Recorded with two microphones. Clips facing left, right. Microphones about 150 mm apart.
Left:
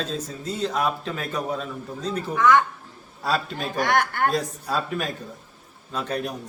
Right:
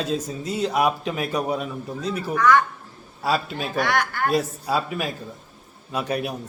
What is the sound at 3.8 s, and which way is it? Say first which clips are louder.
Speech: left 1 dB; 50° left (ahead or behind).